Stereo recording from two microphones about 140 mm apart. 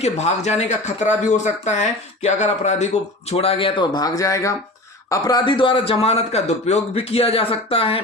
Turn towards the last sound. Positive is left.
turn(degrees=40)  # may be behind; listen again after turning